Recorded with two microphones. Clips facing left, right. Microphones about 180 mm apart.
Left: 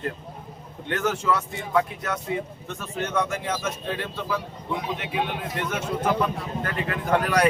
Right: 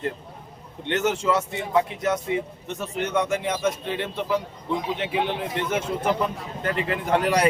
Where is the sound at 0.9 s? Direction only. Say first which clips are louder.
Right 2 dB; 20° right (ahead or behind).